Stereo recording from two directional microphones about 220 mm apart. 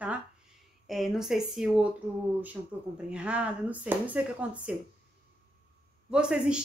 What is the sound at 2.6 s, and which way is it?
Speech, 15° right (ahead or behind).